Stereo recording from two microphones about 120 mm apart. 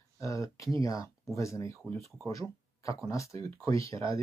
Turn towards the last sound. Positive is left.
turn(degrees=25)  # may be behind; listen again after turning